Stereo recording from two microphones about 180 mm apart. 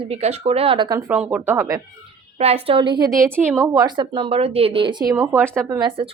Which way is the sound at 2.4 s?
35° right (ahead or behind).